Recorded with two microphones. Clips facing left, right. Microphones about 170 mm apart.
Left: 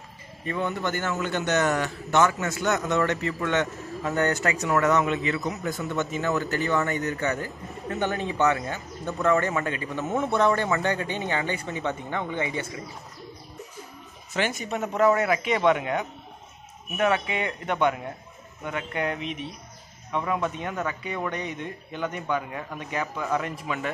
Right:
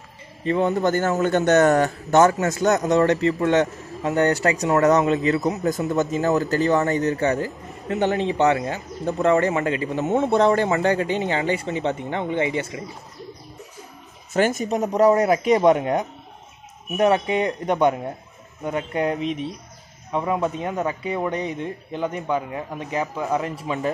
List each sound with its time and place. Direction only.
0.5 s a man's voice: 35° right (ahead or behind)
14.3 s a man's voice: 45° right (ahead or behind)